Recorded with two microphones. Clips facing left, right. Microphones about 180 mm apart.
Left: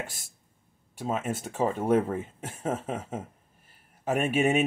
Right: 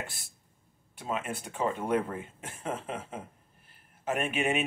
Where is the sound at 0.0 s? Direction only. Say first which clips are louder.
Left 3 dB; 45° left (ahead or behind).